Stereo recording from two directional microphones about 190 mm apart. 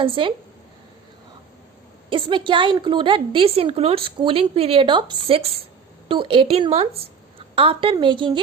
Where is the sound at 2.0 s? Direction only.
25° right (ahead or behind).